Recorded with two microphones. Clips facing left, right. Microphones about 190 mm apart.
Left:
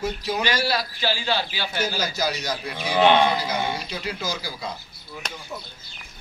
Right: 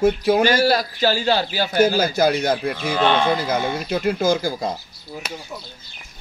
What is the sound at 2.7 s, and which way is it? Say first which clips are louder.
Speech: left 1 dB; 15° left (ahead or behind).